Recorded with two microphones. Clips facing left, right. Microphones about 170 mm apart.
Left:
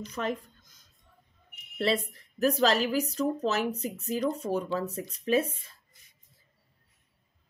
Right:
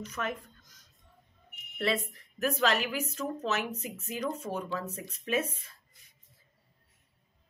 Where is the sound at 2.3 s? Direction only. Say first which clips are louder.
Left 4 dB; 35° left (ahead or behind).